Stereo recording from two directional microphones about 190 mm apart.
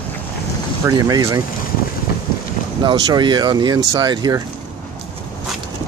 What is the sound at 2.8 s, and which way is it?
Speech, 20° right (ahead or behind).